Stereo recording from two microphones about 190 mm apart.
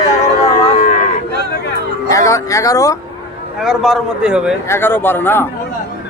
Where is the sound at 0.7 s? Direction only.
40° left (ahead or behind).